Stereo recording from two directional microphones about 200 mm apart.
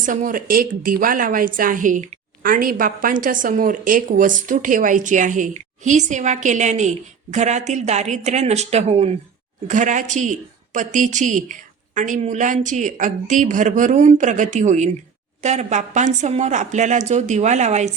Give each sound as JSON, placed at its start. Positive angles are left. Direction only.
{"t": 0.0, "sound": "a woman's voice", "side_deg": -40}